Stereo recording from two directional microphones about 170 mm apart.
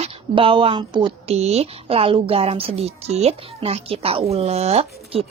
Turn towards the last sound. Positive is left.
turn(degrees=-35)  # may be behind; listen again after turning